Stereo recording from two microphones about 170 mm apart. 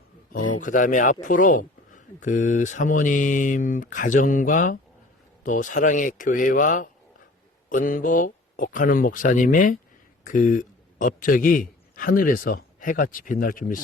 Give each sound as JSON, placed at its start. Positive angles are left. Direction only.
{"t": 0.3, "sound": "a man's voice", "side_deg": 50}